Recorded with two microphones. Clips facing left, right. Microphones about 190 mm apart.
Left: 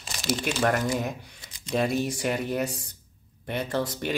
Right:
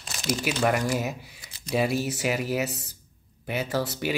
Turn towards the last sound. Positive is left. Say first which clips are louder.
# right 1 dB
turn(degrees=-5)  # may be behind; listen again after turning